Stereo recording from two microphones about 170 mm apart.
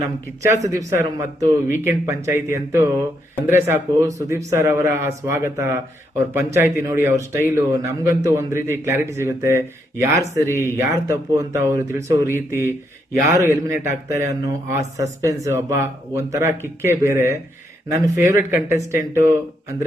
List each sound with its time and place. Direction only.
0.4 s a man's voice: 15° right (ahead or behind)